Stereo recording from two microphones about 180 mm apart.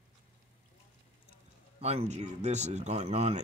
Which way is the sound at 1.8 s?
35° right (ahead or behind).